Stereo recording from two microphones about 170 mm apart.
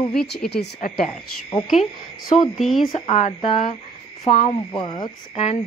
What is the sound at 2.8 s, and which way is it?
Speech, 40° left (ahead or behind).